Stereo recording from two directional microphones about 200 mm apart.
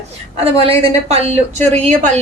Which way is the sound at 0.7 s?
30° right (ahead or behind).